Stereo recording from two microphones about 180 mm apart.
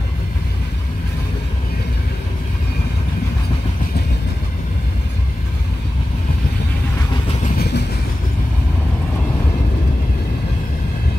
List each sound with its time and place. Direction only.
7.4 s vehicle: 60° left (ahead or behind)